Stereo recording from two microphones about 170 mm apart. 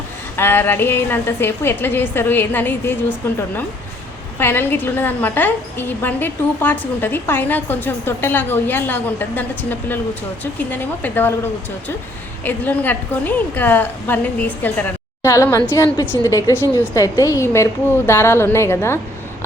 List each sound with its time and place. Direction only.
0.3 s a woman's voice: 15° left (ahead or behind)
12.5 s a woman's voice: 10° left (ahead or behind)